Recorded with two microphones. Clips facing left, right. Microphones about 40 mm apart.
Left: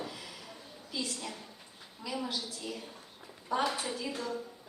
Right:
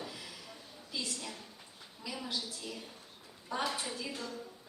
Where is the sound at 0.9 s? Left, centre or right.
Centre.